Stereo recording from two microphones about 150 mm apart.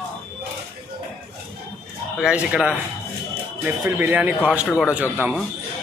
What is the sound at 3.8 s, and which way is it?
Speech, 15° right (ahead or behind).